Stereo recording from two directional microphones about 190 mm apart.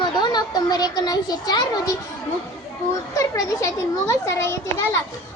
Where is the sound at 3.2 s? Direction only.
15° left (ahead or behind).